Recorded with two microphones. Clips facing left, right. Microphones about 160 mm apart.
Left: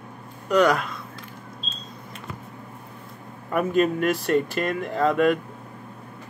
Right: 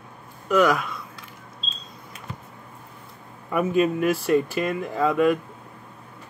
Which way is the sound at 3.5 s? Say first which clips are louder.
Even; centre (ahead or behind).